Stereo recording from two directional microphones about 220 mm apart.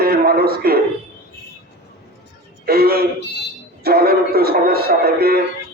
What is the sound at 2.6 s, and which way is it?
A man's voice, 45° right (ahead or behind).